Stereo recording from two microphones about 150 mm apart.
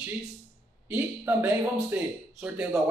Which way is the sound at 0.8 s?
10° right (ahead or behind).